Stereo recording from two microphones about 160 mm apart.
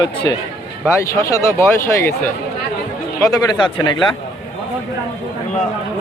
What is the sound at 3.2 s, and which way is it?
Speech, 25° left (ahead or behind).